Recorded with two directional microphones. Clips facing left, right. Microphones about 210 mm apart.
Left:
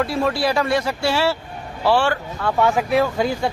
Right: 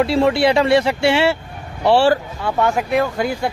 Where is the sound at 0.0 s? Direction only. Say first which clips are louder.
Right 5 dB; 25° right (ahead or behind).